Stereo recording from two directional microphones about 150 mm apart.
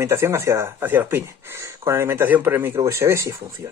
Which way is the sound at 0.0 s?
15° right (ahead or behind).